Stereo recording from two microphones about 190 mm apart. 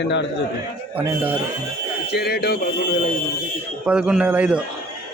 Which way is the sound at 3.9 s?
5° right (ahead or behind).